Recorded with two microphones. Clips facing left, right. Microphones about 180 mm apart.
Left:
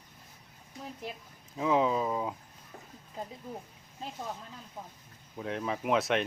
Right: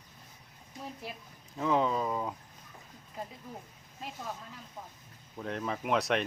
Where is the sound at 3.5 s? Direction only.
25° left (ahead or behind).